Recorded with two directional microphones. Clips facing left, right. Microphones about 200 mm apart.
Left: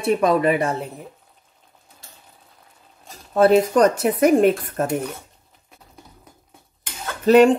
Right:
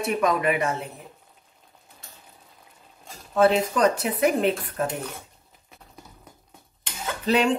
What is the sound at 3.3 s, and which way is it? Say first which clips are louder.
Speech: left 5 dB; 40° left (ahead or behind).